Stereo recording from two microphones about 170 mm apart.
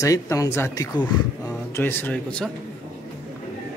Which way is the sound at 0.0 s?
20° left (ahead or behind).